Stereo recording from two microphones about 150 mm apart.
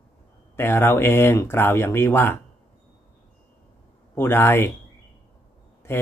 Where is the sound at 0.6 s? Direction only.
15° left (ahead or behind).